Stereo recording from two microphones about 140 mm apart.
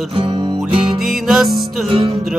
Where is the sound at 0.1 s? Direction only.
40° right (ahead or behind).